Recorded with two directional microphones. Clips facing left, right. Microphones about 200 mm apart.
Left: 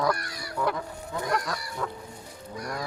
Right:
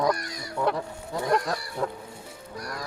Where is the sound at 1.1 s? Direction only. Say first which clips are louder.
Right 4 dB; 30° right (ahead or behind).